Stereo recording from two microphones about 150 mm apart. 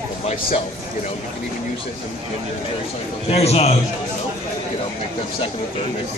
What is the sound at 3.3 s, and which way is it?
Speech, 45° left (ahead or behind).